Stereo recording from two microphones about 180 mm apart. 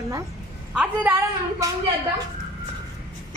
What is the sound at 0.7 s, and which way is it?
A child's voice, 5° right (ahead or behind).